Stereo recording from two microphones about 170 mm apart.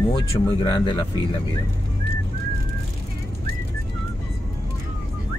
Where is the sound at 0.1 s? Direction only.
30° left (ahead or behind).